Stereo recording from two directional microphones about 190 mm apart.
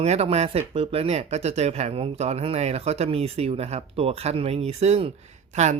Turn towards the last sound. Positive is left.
turn(degrees=-35)  # may be behind; listen again after turning